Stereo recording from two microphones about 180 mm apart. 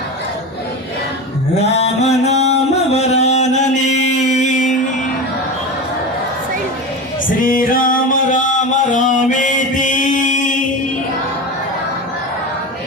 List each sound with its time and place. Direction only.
1.6 s music: 35° left (ahead or behind)
7.4 s music: 50° left (ahead or behind)